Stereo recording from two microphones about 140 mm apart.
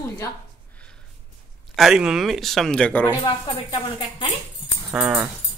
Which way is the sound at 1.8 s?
5° right (ahead or behind).